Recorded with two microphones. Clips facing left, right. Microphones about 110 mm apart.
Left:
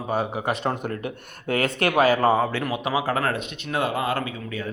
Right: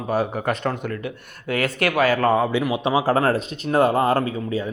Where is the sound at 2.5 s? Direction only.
15° right (ahead or behind).